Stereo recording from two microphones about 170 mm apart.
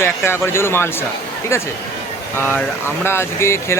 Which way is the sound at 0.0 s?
15° left (ahead or behind).